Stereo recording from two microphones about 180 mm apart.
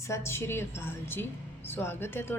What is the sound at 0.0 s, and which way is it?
A woman's voice, 15° left (ahead or behind).